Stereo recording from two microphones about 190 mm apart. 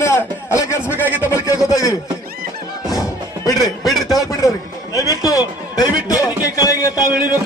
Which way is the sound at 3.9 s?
Centre (ahead or behind).